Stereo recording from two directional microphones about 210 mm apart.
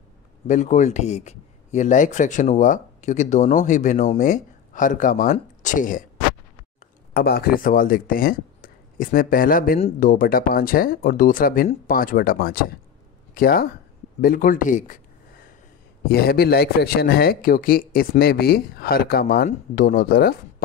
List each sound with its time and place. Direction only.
0.5 s speech: 35° left (ahead or behind)
7.2 s speech: 45° left (ahead or behind)
16.1 s speech: 50° left (ahead or behind)